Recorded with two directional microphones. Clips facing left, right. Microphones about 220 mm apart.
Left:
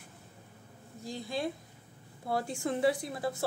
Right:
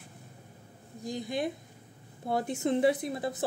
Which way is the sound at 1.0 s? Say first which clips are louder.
Right 3 dB; 15° right (ahead or behind).